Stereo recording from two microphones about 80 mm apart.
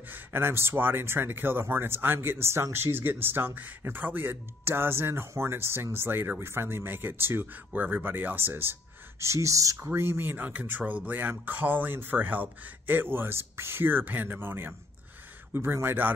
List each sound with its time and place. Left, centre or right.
0.1 s speech: right
9.2 s speech: right
9.8 s speech: right